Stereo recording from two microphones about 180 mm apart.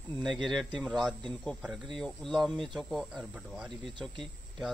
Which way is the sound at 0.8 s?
Centre (ahead or behind).